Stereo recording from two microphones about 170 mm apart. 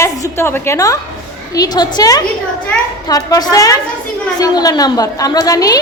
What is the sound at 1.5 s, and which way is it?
A woman's voice, 20° left (ahead or behind).